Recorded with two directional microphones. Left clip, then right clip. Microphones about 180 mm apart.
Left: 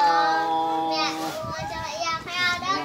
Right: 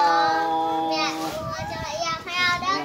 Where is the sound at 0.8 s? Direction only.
30° right (ahead or behind).